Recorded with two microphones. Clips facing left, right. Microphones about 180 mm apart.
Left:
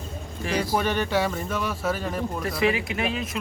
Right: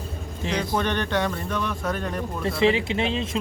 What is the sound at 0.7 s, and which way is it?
Speech, 10° left (ahead or behind).